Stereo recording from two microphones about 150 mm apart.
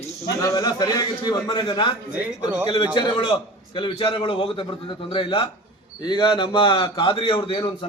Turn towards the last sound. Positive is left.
turn(degrees=35)  # may be behind; listen again after turning